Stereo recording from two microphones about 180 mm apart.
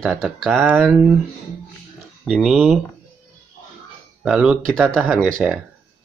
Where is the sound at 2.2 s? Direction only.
5° right (ahead or behind).